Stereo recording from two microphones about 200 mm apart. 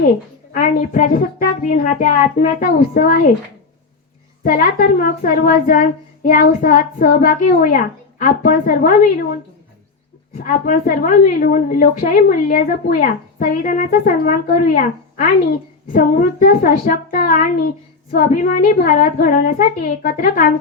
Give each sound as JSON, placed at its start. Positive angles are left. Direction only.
{"t": 0.5, "sound": "a woman's voice", "side_deg": 40}
{"t": 4.4, "sound": "a woman's voice", "side_deg": 45}
{"t": 10.3, "sound": "a woman's voice", "side_deg": 45}
{"t": 15.9, "sound": "a woman's voice", "side_deg": 45}